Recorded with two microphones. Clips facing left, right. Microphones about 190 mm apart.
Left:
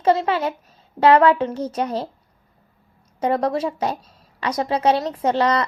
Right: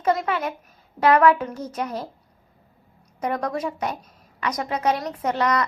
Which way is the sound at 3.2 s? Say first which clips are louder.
Left 5 dB; 30° left (ahead or behind).